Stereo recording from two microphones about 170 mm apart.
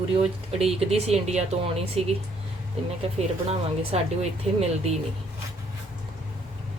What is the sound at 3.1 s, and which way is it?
A woman's voice, 35° right (ahead or behind).